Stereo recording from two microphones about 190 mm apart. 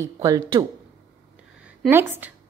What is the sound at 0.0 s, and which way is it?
Speech, 15° right (ahead or behind).